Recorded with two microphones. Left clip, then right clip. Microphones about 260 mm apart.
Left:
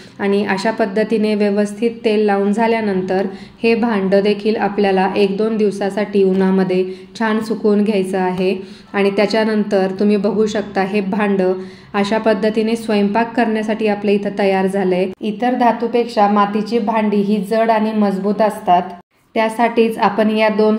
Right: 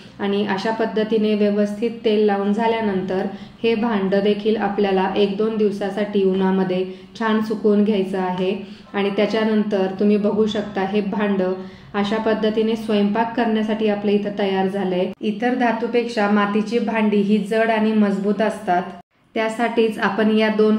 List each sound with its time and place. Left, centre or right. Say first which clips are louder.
0.2 s a woman's voice: left 5 dB; left
19.3 s a woman's voice: left 5 dB; left